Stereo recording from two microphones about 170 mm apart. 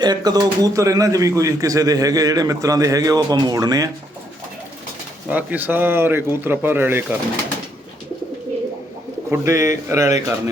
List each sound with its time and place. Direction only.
0.0 s speech: 25° right (ahead or behind)
5.3 s speech: 10° right (ahead or behind)
9.3 s speech: 15° right (ahead or behind)